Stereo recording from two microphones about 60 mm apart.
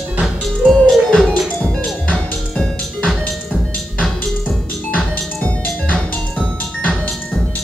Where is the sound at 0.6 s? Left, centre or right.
Centre.